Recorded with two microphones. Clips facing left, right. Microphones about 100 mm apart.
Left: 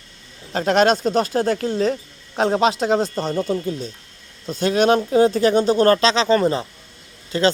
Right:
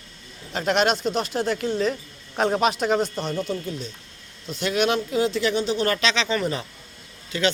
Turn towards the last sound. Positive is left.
turn(degrees=40)  # may be behind; listen again after turning